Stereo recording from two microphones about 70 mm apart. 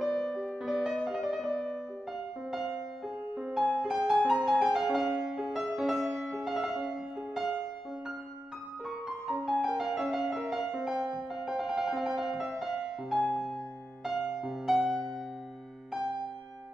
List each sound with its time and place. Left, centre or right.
0.0 s music: centre
8.8 s music: centre
13.3 s music: centre
14.0 s music: centre